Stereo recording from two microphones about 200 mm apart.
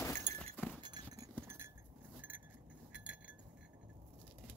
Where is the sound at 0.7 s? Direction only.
20° right (ahead or behind).